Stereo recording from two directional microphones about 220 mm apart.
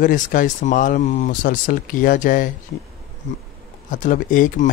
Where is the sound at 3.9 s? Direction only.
35° left (ahead or behind).